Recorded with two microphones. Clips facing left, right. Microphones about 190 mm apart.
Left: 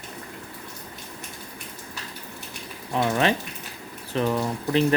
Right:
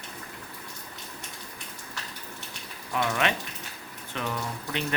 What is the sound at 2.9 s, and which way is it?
Speech, 30° left (ahead or behind).